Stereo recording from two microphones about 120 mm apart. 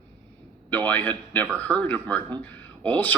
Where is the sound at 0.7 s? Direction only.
15° left (ahead or behind).